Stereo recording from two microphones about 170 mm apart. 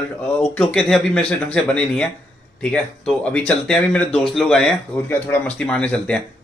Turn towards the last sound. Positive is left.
turn(degrees=5)  # may be behind; listen again after turning